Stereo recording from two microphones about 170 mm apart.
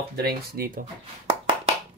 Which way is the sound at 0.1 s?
65° right (ahead or behind).